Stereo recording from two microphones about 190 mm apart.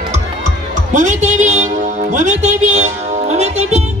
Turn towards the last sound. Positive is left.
turn(degrees=-35)  # may be behind; listen again after turning